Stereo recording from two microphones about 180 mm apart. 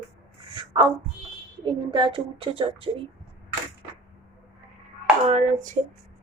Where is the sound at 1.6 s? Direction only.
25° right (ahead or behind).